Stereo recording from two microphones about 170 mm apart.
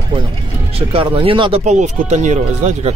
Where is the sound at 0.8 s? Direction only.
30° right (ahead or behind).